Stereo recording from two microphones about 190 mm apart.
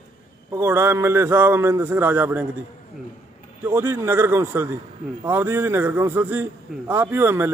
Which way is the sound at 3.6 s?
10° right (ahead or behind).